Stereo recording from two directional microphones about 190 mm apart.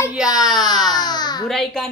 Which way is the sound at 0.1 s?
5° right (ahead or behind).